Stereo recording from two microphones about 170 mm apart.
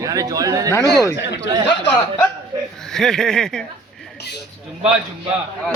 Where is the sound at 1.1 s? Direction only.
90° left.